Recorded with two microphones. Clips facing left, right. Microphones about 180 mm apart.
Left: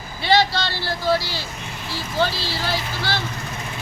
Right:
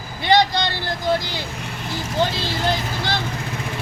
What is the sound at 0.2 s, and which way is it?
Speech, 15° right (ahead or behind).